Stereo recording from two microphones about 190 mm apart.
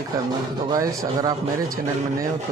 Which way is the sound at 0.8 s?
20° right (ahead or behind).